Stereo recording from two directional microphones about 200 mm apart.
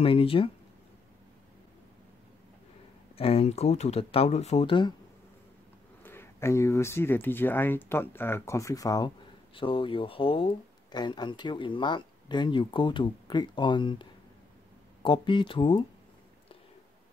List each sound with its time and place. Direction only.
0.0 s speech: 25° left (ahead or behind)
3.2 s speech: 30° left (ahead or behind)
6.0 s speech: 10° left (ahead or behind)
15.0 s speech: 25° left (ahead or behind)